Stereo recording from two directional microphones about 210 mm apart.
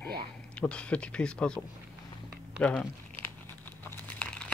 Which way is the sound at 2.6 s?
5° left (ahead or behind).